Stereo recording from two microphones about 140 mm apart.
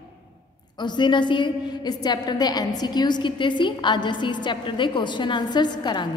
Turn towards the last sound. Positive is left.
turn(degrees=30)  # may be behind; listen again after turning